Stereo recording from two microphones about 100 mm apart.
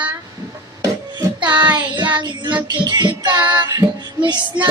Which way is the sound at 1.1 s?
50° right (ahead or behind).